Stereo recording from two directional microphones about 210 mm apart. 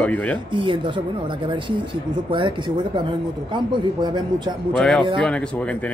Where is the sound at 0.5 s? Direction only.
20° right (ahead or behind).